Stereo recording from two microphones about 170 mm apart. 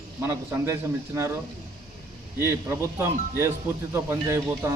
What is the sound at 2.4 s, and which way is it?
Speech, 15° right (ahead or behind).